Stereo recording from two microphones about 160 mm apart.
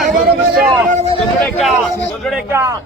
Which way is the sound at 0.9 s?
45° right (ahead or behind).